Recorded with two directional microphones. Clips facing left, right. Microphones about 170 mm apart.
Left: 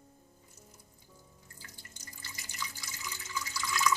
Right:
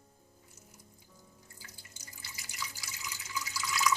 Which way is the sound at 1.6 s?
10° right (ahead or behind).